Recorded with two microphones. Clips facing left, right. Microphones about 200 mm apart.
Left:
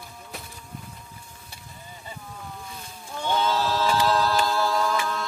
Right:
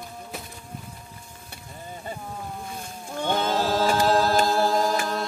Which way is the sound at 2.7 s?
50° right (ahead or behind).